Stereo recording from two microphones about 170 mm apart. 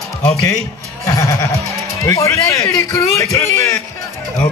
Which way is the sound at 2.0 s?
15° left (ahead or behind).